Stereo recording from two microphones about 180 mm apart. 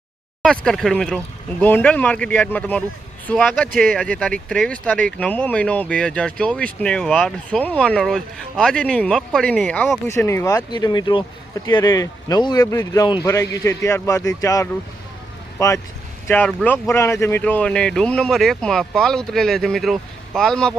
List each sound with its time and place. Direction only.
0.4 s speech: 5° left (ahead or behind)
10.2 s speech: 15° left (ahead or behind)